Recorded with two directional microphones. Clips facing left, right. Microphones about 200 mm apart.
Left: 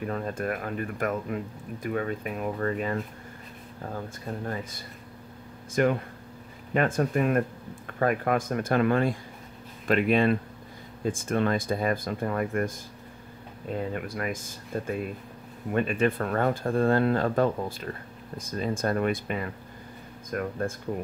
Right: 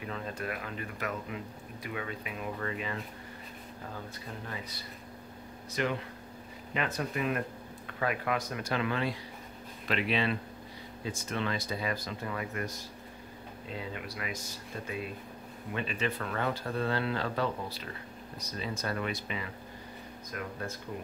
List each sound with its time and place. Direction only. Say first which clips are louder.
0.0 s speech: left 7 dB; 45° left (ahead or behind)
4.5 s speech: left 7 dB; 50° left (ahead or behind)